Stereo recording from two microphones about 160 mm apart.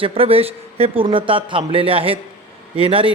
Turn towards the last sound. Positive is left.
turn(degrees=-35)  # may be behind; listen again after turning